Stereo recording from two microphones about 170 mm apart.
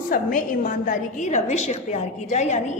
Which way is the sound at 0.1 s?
55° left (ahead or behind).